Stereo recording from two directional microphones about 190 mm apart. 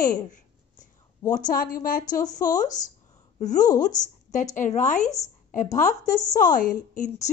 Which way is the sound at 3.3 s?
40° left (ahead or behind).